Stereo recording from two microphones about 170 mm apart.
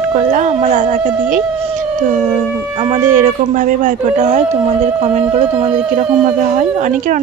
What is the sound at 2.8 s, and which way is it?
Speech, 45° right (ahead or behind).